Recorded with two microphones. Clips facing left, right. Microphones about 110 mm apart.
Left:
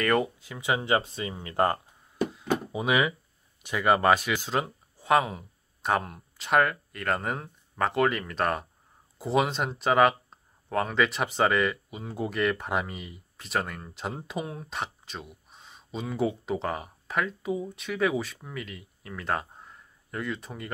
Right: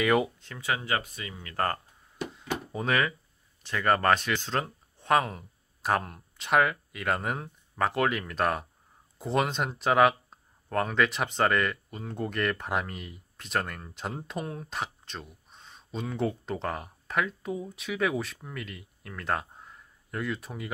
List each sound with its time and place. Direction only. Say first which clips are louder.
0.0 s speech: even; 5° right (ahead or behind)
0.6 s speech: left 4 dB; 20° left (ahead or behind)
2.3 s a sound: left 5 dB; 10° left (ahead or behind)
3.6 s speech: left 2 dB; 10° left (ahead or behind)